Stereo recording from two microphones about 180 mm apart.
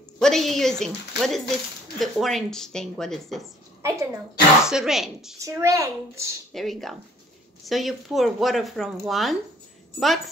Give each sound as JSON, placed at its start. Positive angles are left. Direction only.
{"t": 0.2, "sound": "a woman's voice", "side_deg": 0}
{"t": 3.8, "sound": "a child's voice", "side_deg": -15}
{"t": 4.6, "sound": "speech", "side_deg": -5}
{"t": 5.4, "sound": "a child's voice", "side_deg": -15}
{"t": 6.5, "sound": "speech", "side_deg": 0}